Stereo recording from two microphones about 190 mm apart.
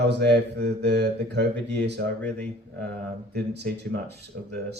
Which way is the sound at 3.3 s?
60° right (ahead or behind).